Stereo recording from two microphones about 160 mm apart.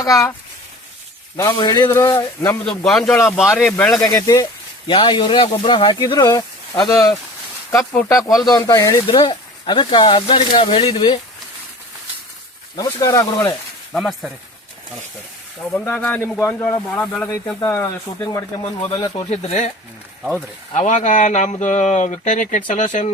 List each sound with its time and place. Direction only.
1.4 s speech: 25° left (ahead or behind)
2.6 s a man's voice: centre (ahead or behind)
3.7 s speech: 10° left (ahead or behind)
3.9 s speech: 20° left (ahead or behind)
7.8 s speech: 10° left (ahead or behind)
8.4 s speech: 20° left (ahead or behind)
12.7 s speech: 20° left (ahead or behind)
13.9 s a man's voice: centre (ahead or behind)
15.7 s speech: 10° left (ahead or behind)
18.9 s speech: 25° left (ahead or behind)
19.3 s speech: 45° left (ahead or behind)
20.7 s speech: 50° left (ahead or behind)